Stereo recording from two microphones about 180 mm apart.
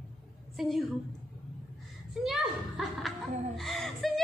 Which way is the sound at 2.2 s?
Centre (ahead or behind).